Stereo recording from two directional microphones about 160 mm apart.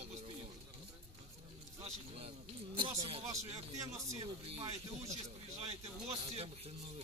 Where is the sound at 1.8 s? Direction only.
40° right (ahead or behind).